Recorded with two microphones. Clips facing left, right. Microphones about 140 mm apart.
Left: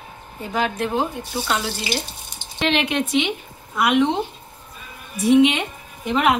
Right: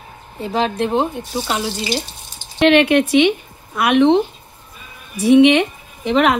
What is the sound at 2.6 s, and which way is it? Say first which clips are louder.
A woman's voice: right 9 dB; 65° right (ahead or behind).